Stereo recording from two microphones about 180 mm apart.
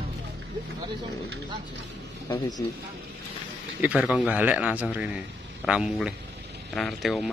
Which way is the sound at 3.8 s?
5° right (ahead or behind).